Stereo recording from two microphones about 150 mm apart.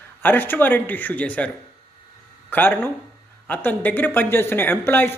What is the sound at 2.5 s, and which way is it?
Speech, 15° left (ahead or behind).